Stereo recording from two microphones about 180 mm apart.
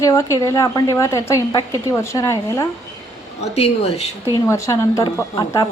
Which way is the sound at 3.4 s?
35° left (ahead or behind).